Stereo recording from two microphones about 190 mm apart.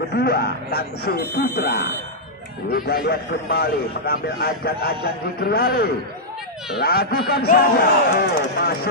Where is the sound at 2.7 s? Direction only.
55° left (ahead or behind).